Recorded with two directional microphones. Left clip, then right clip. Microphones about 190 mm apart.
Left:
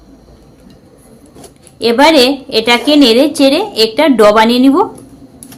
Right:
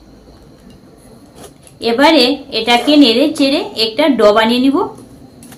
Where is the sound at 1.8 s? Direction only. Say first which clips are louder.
Left 3 dB; 60° left (ahead or behind).